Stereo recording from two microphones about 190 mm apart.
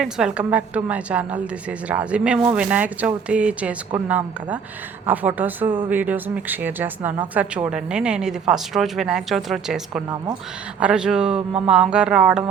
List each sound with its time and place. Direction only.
0.0 s a woman's voice: 5° right (ahead or behind)
11.3 s a sound: 30° right (ahead or behind)
11.7 s a woman's voice: 5° right (ahead or behind)